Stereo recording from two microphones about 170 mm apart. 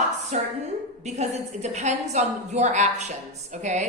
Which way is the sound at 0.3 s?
45° right (ahead or behind).